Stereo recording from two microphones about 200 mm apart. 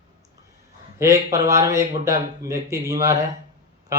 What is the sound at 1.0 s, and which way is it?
Speech, 15° right (ahead or behind).